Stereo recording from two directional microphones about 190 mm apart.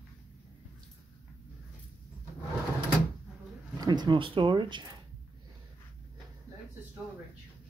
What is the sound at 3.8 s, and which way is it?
Speech, 20° right (ahead or behind).